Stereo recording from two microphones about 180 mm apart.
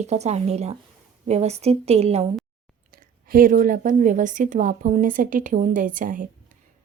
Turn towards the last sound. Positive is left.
turn(degrees=-45)  # may be behind; listen again after turning